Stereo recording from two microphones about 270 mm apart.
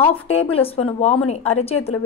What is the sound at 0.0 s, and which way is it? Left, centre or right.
A woman's voice, left.